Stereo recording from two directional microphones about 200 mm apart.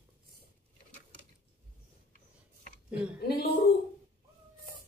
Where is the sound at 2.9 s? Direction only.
5° right (ahead or behind).